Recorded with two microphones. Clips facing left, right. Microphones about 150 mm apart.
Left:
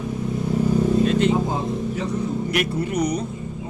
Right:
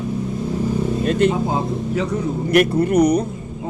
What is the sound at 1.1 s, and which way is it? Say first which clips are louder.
Speech: right 2 dB; 55° right (ahead or behind).